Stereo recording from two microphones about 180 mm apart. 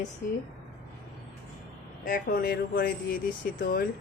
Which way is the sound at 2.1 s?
55° left (ahead or behind).